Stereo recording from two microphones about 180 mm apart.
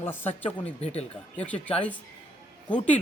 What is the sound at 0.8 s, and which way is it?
Speech, 35° left (ahead or behind).